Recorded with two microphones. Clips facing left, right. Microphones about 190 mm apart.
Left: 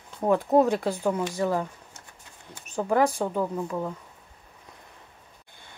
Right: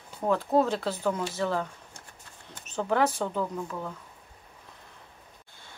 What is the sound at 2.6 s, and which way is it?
A woman's voice, 10° left (ahead or behind).